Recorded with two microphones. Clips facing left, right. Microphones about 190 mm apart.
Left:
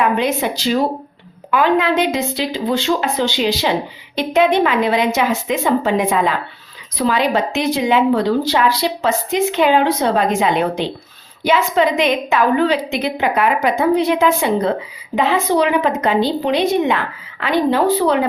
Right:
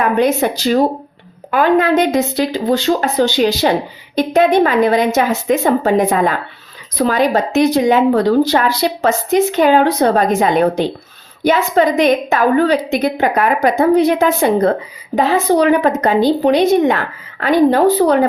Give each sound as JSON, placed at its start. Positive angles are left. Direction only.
{"t": 0.0, "sound": "a woman's voice", "side_deg": -45}